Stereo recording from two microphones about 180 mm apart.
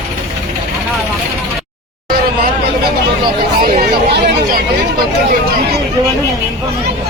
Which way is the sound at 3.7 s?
60° right (ahead or behind).